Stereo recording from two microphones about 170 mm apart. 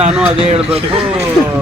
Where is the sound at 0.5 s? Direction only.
35° right (ahead or behind).